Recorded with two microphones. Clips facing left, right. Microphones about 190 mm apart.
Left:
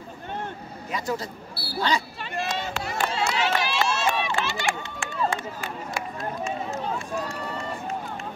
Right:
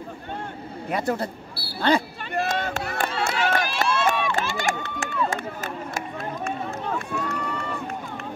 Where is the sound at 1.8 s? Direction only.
55° right (ahead or behind).